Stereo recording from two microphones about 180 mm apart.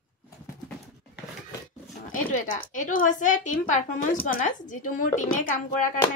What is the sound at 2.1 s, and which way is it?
Sizzle, 50° left (ahead or behind).